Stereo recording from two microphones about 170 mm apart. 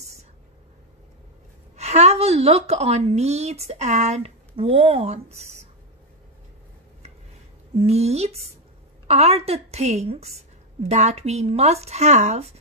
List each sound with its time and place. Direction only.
1.8 s a woman's voice: 40° right (ahead or behind)
7.7 s a woman's voice: 40° right (ahead or behind)